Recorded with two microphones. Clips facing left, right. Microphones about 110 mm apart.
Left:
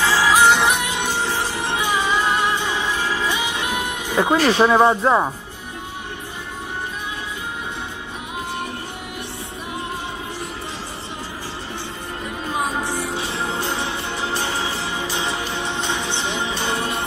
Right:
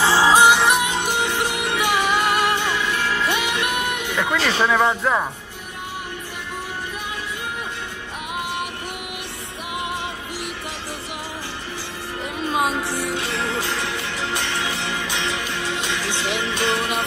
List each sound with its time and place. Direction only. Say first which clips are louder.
0.0 s music: right 1 dB; 25° right (ahead or behind)
0.5 s music: even; centre (ahead or behind)
1.0 s music: right 1 dB; 60° right (ahead or behind)
4.1 s speech: left 7 dB; 30° left (ahead or behind)
13.1 s music: even; 85° right
15.2 s music: left 1 dB; 30° left (ahead or behind)
16.5 s music: right 2 dB; 85° right